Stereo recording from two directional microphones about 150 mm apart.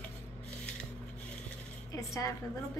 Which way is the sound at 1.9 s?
20° left (ahead or behind).